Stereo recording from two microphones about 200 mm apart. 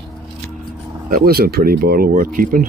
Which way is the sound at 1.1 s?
50° right (ahead or behind).